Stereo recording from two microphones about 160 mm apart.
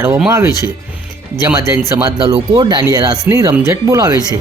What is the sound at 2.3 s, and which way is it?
Speech, 25° right (ahead or behind).